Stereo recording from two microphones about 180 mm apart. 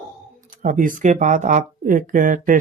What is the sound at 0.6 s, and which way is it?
Speech, 45° right (ahead or behind).